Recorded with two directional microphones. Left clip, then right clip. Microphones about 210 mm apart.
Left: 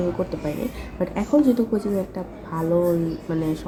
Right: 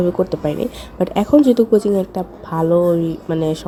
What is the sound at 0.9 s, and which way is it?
A woman's voice, 40° right (ahead or behind).